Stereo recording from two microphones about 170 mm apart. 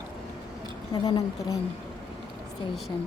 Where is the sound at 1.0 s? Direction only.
20° left (ahead or behind).